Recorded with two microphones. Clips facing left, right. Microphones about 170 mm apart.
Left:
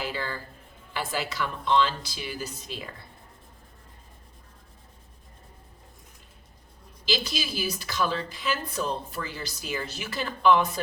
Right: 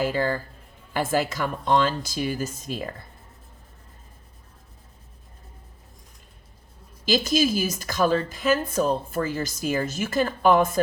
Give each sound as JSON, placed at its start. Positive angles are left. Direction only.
{"t": 0.0, "sound": "a woman's voice", "side_deg": -45}
{"t": 7.0, "sound": "a woman's voice", "side_deg": -45}